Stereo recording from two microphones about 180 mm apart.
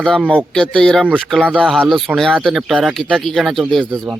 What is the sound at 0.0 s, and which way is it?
Speech, 5° left (ahead or behind).